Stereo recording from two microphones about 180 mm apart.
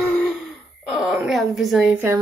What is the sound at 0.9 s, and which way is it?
Speech, 5° right (ahead or behind).